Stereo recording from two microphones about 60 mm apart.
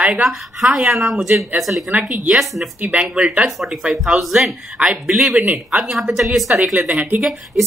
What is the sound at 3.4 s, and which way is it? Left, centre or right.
Speech, centre.